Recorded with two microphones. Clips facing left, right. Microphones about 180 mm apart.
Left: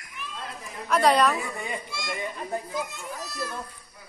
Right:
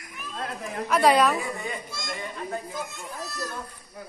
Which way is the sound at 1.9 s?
40° right (ahead or behind).